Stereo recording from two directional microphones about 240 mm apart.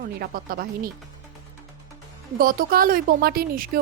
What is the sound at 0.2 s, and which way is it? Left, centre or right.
Speech, right.